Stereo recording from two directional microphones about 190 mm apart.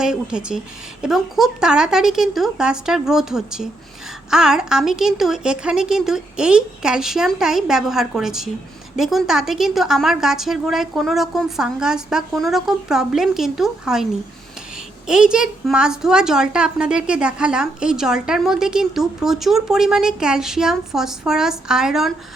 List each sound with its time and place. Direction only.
0.0 s a woman's voice: 5° right (ahead or behind)